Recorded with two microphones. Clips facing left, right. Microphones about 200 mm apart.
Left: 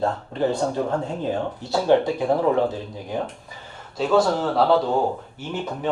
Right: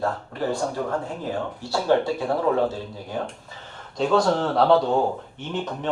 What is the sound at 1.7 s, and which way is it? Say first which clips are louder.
Speech: left 3 dB; 20° left (ahead or behind).